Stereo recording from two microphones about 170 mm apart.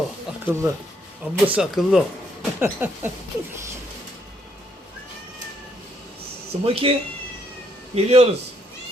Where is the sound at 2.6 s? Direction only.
10° right (ahead or behind).